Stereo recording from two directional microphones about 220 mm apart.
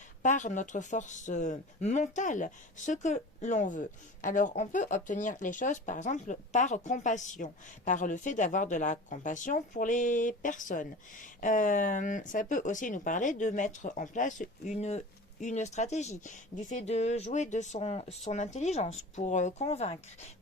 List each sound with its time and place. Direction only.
0.2 s speech: 35° left (ahead or behind)